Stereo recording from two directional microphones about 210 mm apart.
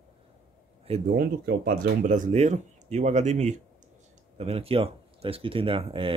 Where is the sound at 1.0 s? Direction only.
45° right (ahead or behind).